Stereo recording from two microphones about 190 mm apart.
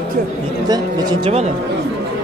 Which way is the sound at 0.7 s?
20° right (ahead or behind).